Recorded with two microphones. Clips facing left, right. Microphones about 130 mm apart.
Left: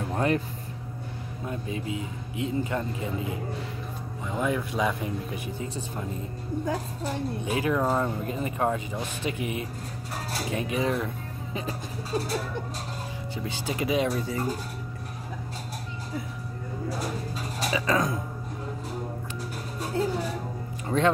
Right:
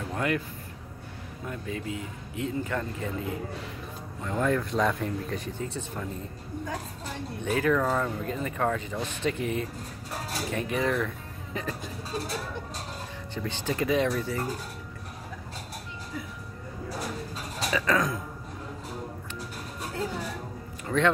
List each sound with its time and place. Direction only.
0.1 s music: 30° left (ahead or behind)
1.4 s speech: 20° left (ahead or behind)
7.4 s speech: 15° left (ahead or behind)
13.4 s speech: 15° left (ahead or behind)
17.6 s speech: 20° left (ahead or behind)
20.8 s music: 25° left (ahead or behind)